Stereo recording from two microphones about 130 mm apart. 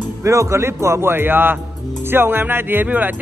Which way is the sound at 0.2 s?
25° right (ahead or behind).